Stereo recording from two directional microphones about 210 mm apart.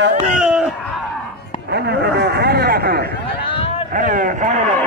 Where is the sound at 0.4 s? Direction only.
5° right (ahead or behind).